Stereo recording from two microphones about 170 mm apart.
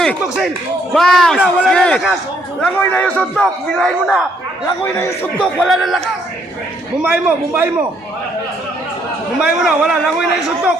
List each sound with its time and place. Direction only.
0.0 s a man's voice: centre (ahead or behind)
4.8 s a man's voice: 15° left (ahead or behind)
5.4 s a man's voice: centre (ahead or behind)
7.0 s a man's voice: 10° right (ahead or behind)
9.4 s a man's voice: 5° right (ahead or behind)